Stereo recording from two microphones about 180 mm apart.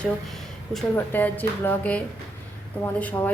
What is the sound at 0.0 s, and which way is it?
Speech, centre (ahead or behind).